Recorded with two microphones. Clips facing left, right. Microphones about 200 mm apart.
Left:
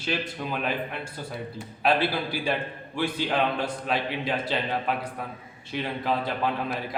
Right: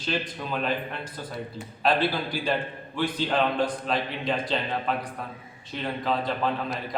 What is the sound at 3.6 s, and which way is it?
A man's voice, 5° left (ahead or behind).